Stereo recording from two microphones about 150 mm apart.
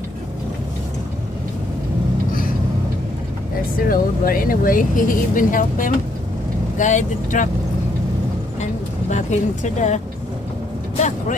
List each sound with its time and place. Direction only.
3.8 s speech: 70° left (ahead or behind); by 7.4 s 55° left (ahead or behind)
9.1 s speech: 55° left (ahead or behind)
11.0 s speech: 55° left (ahead or behind)